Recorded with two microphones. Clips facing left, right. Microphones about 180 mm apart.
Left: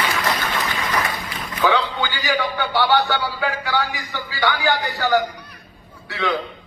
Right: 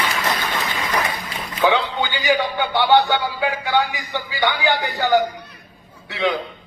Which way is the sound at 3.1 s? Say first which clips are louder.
Right 2 dB; 20° right (ahead or behind).